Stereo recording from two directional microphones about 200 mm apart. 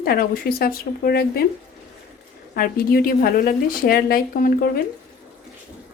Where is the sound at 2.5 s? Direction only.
45° left (ahead or behind).